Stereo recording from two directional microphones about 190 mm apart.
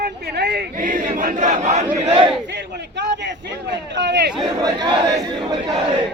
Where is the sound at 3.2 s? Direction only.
65° right (ahead or behind).